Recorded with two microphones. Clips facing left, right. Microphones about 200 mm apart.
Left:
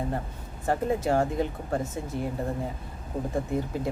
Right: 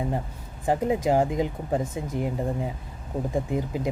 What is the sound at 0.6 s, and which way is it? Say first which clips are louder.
Speech: right 3 dB; 15° right (ahead or behind).